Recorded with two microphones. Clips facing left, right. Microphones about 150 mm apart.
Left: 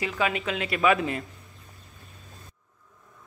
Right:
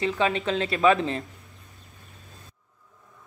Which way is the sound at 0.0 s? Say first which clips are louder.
Right 3 dB; 30° right (ahead or behind).